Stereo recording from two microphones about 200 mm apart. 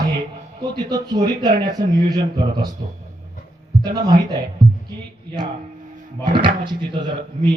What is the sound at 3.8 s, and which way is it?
Speech, 20° right (ahead or behind).